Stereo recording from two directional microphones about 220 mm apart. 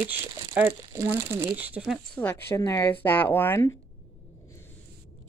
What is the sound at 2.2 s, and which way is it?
Speech, 10° left (ahead or behind).